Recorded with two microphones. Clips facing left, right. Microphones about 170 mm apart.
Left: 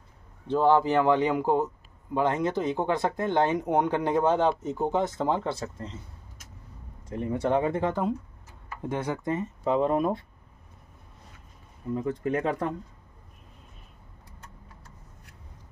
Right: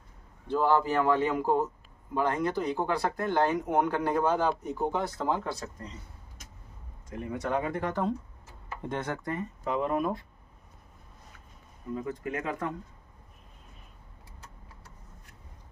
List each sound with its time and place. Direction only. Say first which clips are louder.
0.5 s speech: left 4 dB; 20° left (ahead or behind)
7.1 s speech: left 5 dB; 30° left (ahead or behind)
8.8 s speech: left 4 dB; 10° left (ahead or behind); by 10.2 s 30° left (ahead or behind)
11.9 s speech: left 6 dB; 35° left (ahead or behind)